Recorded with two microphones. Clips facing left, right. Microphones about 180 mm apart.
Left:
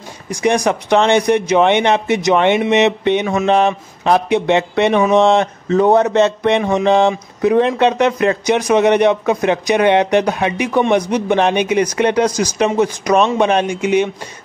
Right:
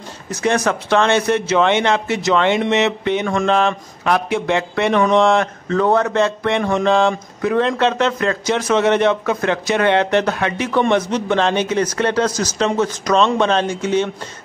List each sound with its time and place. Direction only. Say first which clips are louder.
0.3 s a man's voice: left 3 dB; 15° left (ahead or behind)